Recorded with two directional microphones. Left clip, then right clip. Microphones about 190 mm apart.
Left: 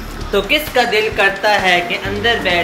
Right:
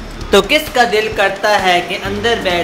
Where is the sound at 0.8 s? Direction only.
15° right (ahead or behind).